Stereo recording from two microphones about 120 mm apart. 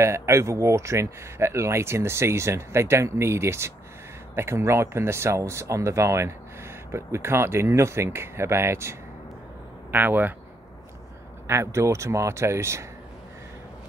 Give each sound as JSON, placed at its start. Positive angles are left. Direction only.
{"t": 0.0, "sound": "speech", "side_deg": -25}
{"t": 11.4, "sound": "speech", "side_deg": -25}